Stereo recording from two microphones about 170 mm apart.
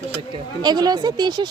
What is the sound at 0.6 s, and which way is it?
Speech, 25° right (ahead or behind).